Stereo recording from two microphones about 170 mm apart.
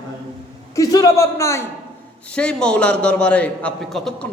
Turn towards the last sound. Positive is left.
turn(degrees=0)  # may be behind; listen again after turning